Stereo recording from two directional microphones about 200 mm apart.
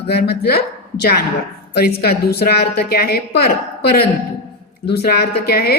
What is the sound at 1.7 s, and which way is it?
A woman's voice, 55° left (ahead or behind).